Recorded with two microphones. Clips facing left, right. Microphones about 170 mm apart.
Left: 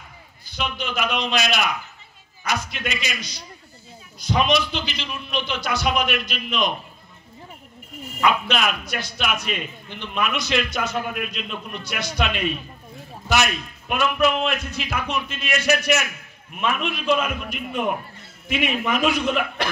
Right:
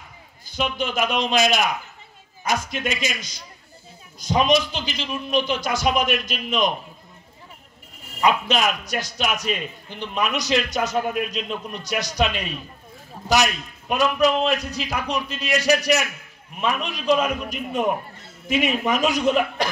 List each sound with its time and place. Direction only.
0.5 s a man's voice: 45° right (ahead or behind)
8.2 s a man's voice: 40° right (ahead or behind)
13.3 s a man's voice: 35° right (ahead or behind)